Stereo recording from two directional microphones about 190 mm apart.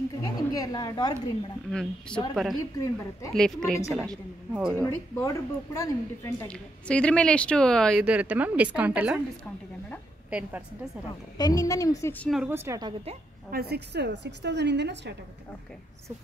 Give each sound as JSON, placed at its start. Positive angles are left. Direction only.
{"t": 0.2, "sound": "a woman's voice", "side_deg": 20}
{"t": 1.7, "sound": "a woman's voice", "side_deg": 5}
{"t": 2.8, "sound": "speech", "side_deg": 15}
{"t": 3.3, "sound": "a woman's voice", "side_deg": 5}
{"t": 4.7, "sound": "speech", "side_deg": 15}
{"t": 6.4, "sound": "a woman's voice", "side_deg": 5}
{"t": 8.0, "sound": "a woman's voice", "side_deg": -5}
{"t": 11.3, "sound": "speech", "side_deg": 20}
{"t": 12.4, "sound": "a woman's voice", "side_deg": -10}
{"t": 13.5, "sound": "a woman's voice", "side_deg": -55}